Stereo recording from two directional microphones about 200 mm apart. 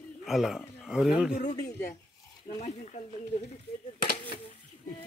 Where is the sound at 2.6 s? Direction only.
35° left (ahead or behind).